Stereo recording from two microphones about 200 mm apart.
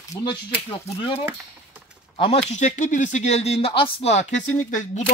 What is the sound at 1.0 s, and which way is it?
Speech, 30° left (ahead or behind).